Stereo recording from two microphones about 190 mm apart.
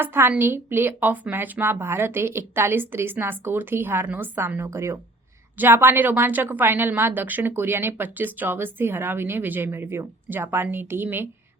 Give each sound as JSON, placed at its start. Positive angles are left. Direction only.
{"t": 0.0, "sound": "a woman's voice", "side_deg": -10}